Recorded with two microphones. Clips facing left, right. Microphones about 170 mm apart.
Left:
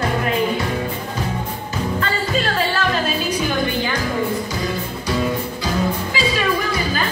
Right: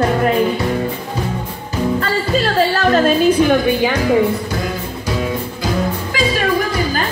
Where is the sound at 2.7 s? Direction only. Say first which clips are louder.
Right 7 dB; 45° right (ahead or behind); by 4.2 s 65° right (ahead or behind).